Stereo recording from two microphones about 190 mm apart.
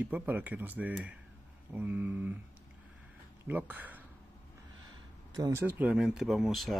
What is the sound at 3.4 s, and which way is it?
Speech, 10° right (ahead or behind).